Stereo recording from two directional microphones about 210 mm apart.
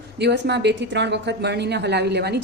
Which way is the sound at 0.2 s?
55° right (ahead or behind).